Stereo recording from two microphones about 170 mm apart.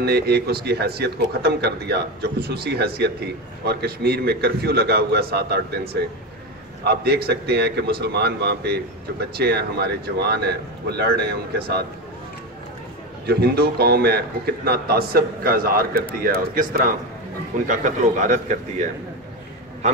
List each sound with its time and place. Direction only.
0.0 s speech: 70° right (ahead or behind)
6.8 s speech: 70° right (ahead or behind)
13.3 s a man's voice: 65° right (ahead or behind); by 18.9 s 45° right (ahead or behind)